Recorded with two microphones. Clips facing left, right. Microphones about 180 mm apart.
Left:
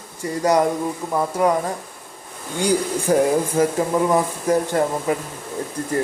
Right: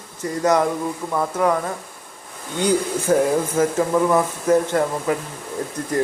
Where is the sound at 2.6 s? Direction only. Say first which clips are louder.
Even; 10° left (ahead or behind).